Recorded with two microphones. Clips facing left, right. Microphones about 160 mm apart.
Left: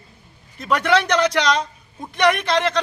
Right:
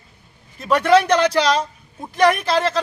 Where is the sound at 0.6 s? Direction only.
30° right (ahead or behind).